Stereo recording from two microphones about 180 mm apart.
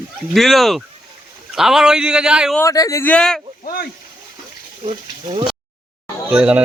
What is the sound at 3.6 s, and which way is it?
Speech, 55° left (ahead or behind).